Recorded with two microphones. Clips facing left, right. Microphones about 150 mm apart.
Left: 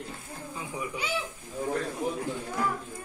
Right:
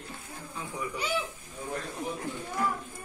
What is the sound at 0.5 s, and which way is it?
Speech, 15° left (ahead or behind).